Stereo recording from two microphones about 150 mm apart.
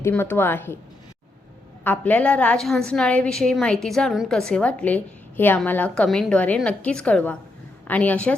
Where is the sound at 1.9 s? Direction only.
10° left (ahead or behind).